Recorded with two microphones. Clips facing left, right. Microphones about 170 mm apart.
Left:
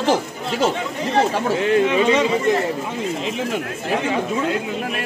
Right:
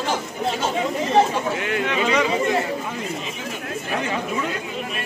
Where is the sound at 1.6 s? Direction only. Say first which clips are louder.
Left 6 dB; 25° left (ahead or behind).